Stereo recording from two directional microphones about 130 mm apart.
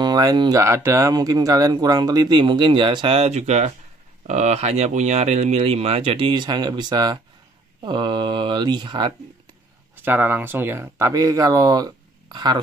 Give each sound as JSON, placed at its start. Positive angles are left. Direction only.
{"t": 0.0, "sound": "speech", "side_deg": -30}
{"t": 6.1, "sound": "speech", "side_deg": -35}
{"t": 9.9, "sound": "speech", "side_deg": -15}